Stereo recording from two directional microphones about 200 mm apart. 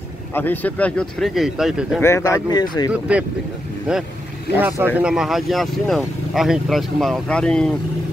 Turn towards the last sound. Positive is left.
turn(degrees=5)  # may be behind; listen again after turning